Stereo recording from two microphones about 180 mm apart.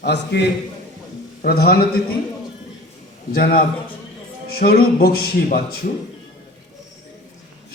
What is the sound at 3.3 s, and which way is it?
A man's voice, 55° left (ahead or behind).